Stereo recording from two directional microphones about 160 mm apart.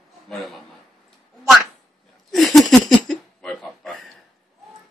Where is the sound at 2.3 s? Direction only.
Centre (ahead or behind).